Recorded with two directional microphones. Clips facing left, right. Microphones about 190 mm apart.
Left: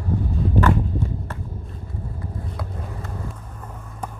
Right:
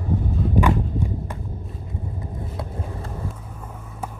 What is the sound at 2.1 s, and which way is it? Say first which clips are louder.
Vehicle: even; 25° right (ahead or behind).